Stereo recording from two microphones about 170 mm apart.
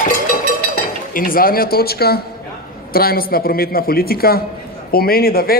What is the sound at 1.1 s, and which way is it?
Speech, 55° left (ahead or behind).